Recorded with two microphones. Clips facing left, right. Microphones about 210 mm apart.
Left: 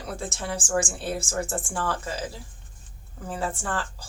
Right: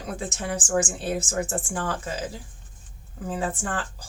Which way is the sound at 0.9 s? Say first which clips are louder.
Right 2 dB; 20° right (ahead or behind).